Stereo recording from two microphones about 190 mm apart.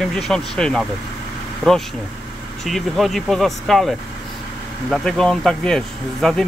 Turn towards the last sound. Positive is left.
turn(degrees=5)  # may be behind; listen again after turning